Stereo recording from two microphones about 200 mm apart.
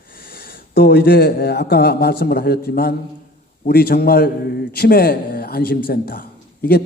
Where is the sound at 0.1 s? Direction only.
50° left (ahead or behind).